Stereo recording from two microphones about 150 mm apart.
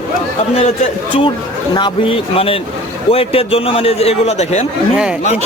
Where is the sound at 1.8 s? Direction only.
35° left (ahead or behind).